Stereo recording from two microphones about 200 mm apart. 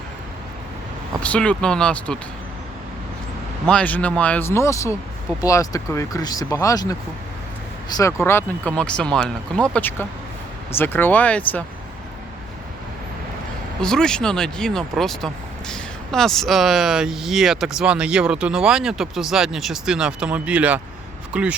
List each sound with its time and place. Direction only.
1.2 s speech: 5° left (ahead or behind)
3.7 s speech: 5° left (ahead or behind)
7.9 s speech: 15° left (ahead or behind)
13.8 s speech: 5° left (ahead or behind)